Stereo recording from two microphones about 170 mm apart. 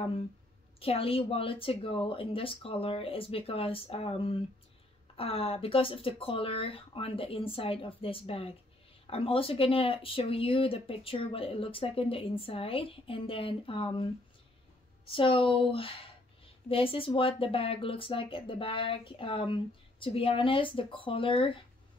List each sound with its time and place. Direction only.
0.7 s speech: 35° left (ahead or behind)
15.0 s speech: 30° left (ahead or behind)